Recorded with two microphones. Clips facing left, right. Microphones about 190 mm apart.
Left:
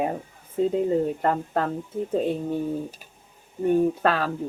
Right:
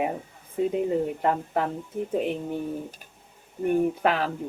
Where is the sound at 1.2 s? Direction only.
15° right (ahead or behind).